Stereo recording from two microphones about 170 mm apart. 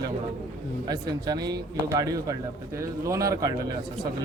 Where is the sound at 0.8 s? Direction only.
25° right (ahead or behind).